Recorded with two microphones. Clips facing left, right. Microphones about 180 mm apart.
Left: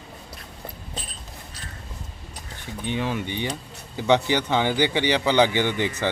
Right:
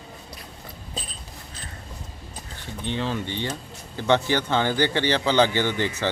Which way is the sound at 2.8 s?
15° left (ahead or behind).